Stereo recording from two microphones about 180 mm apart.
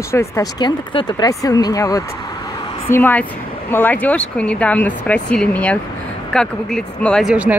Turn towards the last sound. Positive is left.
turn(degrees=5)  # may be behind; listen again after turning